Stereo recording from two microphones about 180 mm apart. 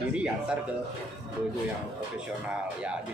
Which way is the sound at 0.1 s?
5° right (ahead or behind).